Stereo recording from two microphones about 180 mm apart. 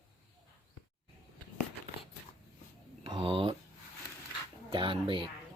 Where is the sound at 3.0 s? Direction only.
25° right (ahead or behind).